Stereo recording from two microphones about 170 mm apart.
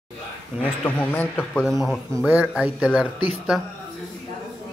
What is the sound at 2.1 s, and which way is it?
Speech, 10° right (ahead or behind).